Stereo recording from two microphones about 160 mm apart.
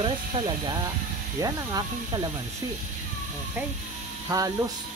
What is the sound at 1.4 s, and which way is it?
Speech, 25° right (ahead or behind).